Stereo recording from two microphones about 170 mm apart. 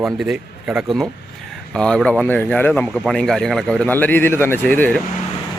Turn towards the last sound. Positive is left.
turn(degrees=10)  # may be behind; listen again after turning